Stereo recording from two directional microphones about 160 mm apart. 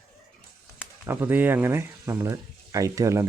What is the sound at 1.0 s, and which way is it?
Speech, 15° right (ahead or behind).